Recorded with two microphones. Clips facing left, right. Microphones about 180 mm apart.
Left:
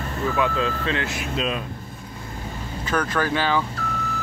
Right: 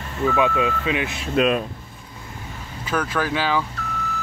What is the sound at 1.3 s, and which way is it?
Speech, 60° right (ahead or behind).